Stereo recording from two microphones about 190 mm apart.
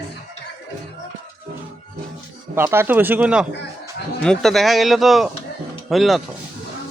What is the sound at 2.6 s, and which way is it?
Speech, 10° right (ahead or behind).